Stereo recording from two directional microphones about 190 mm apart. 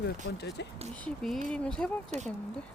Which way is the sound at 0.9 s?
5° left (ahead or behind).